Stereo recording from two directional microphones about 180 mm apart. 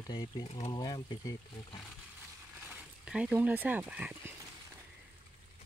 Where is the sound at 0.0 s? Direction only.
20° left (ahead or behind).